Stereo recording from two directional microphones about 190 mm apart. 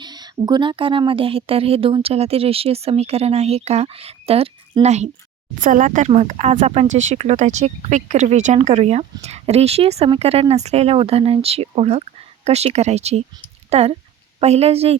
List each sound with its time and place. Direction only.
0.0 s speech: 20° right (ahead or behind)